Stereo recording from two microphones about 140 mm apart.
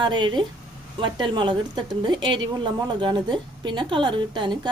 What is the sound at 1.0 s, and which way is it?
Speech, 35° right (ahead or behind).